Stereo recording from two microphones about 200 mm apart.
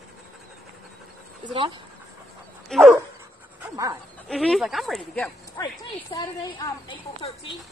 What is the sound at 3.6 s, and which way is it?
Dog, 15° right (ahead or behind).